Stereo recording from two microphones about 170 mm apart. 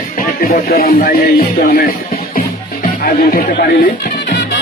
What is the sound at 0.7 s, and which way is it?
Speech, 60° left (ahead or behind).